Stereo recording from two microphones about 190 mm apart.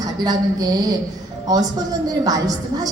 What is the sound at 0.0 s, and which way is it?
A woman's voice, 20° right (ahead or behind).